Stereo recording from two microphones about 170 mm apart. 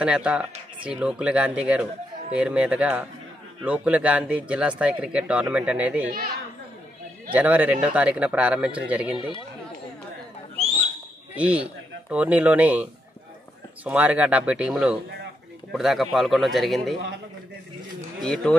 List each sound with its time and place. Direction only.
0.0 s speech: 5° right (ahead or behind)
6.0 s speech: 60° right (ahead or behind)
7.3 s speech: 10° right (ahead or behind)
9.1 s speech: 30° left (ahead or behind)
11.3 s a man's voice: 5° right (ahead or behind)
13.8 s a man's voice: 10° right (ahead or behind)
18.2 s a man's voice: 5° left (ahead or behind)